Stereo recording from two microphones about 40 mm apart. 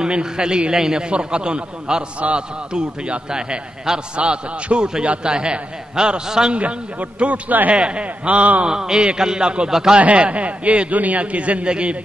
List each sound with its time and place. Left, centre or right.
0.0 s a man's voice: centre
2.1 s a man's voice: right
2.7 s a man's voice: centre
6.5 s a man's voice: right
8.6 s a man's voice: centre
9.7 s a man's voice: centre
9.9 s a man's voice: right